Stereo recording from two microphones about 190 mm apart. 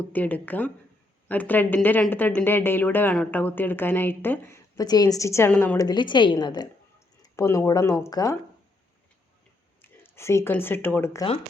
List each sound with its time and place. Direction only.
0.1 s speech: 10° left (ahead or behind)
9.8 s speech: 10° left (ahead or behind)